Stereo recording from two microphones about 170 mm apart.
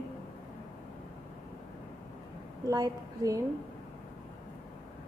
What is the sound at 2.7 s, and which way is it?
Speech, 20° right (ahead or behind).